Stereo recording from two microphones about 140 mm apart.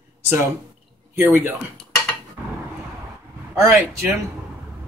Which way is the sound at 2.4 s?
15° right (ahead or behind).